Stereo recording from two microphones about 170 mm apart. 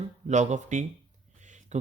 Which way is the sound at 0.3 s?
45° right (ahead or behind).